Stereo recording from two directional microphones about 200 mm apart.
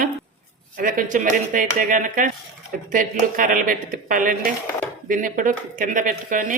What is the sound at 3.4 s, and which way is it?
A woman's voice, 45° right (ahead or behind).